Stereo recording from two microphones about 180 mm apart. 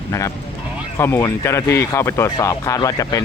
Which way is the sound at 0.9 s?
15° left (ahead or behind).